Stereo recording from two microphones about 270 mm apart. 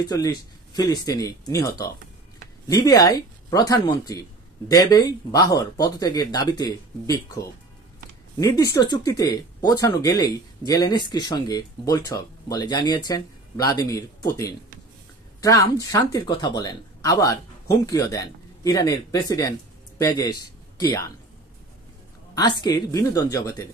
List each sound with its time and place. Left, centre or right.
0.0 s speech: centre
22.3 s speech: centre